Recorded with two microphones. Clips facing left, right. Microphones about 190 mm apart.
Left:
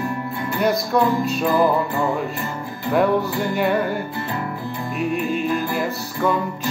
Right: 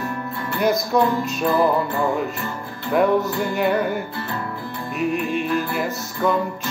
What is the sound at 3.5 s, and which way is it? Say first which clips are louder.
Speech: even; centre (ahead or behind).